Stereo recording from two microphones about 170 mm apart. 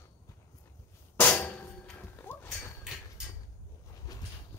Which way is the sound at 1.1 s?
10° left (ahead or behind).